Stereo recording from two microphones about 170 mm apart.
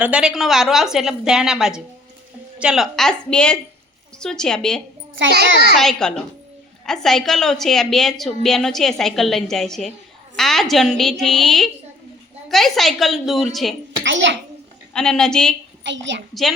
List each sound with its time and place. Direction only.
0.0 s a woman's voice: 5° right (ahead or behind)
5.2 s a child's voice: 80° right
5.8 s a woman's voice: 5° left (ahead or behind)
14.0 s a child's voice: 90° right
14.9 s a woman's voice: 5° left (ahead or behind)
15.8 s a woman's voice: 90° right